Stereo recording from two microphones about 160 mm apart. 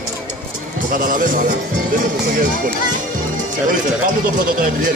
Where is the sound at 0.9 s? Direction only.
60° right (ahead or behind).